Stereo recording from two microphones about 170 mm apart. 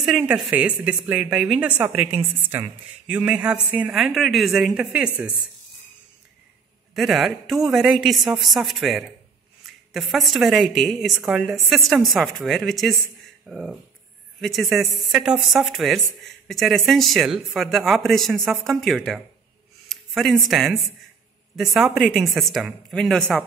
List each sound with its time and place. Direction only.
0.0 s a woman's voice: centre (ahead or behind)
6.9 s a woman's voice: centre (ahead or behind)